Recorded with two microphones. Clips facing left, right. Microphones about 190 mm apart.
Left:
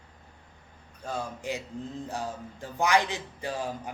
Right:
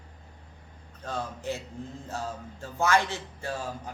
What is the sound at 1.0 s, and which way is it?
Speech, 10° left (ahead or behind).